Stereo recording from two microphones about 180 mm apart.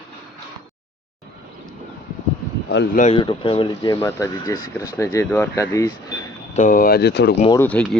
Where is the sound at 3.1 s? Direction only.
30° left (ahead or behind).